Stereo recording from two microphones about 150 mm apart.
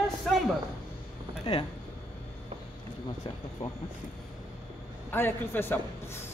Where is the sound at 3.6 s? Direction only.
50° left (ahead or behind).